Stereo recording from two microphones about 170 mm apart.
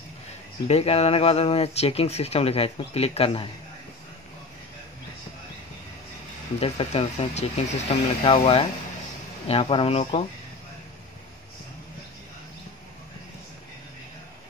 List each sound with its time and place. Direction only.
0.7 s speech: 35° left (ahead or behind)
6.6 s speech: 35° left (ahead or behind)